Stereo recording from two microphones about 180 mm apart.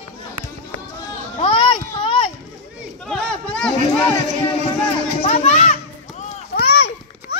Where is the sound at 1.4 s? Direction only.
30° left (ahead or behind).